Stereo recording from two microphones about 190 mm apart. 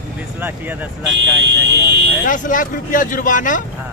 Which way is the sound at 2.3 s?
45° left (ahead or behind).